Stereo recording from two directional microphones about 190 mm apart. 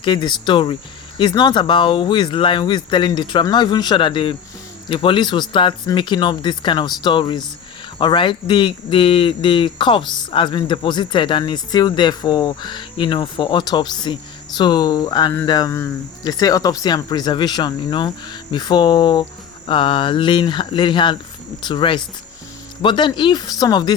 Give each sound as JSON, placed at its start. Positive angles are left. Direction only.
{"t": 0.0, "sound": "speech", "side_deg": 25}